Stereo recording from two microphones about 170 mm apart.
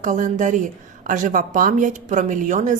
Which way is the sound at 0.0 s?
50° right (ahead or behind).